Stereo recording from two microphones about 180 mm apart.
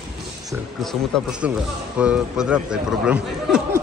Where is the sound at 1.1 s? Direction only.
5° left (ahead or behind).